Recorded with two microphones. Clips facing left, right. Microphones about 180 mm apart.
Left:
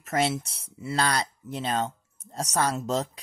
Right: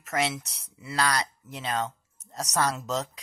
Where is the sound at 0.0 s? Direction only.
30° left (ahead or behind).